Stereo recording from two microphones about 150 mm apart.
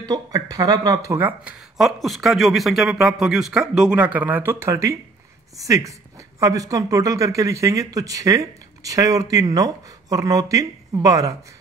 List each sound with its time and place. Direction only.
0.0 s a man's voice: 25° right (ahead or behind)
1.8 s a man's voice: centre (ahead or behind); by 11.3 s 20° right (ahead or behind)